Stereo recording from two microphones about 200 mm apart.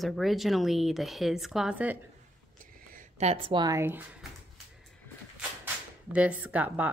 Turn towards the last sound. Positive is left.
turn(degrees=-10)  # may be behind; listen again after turning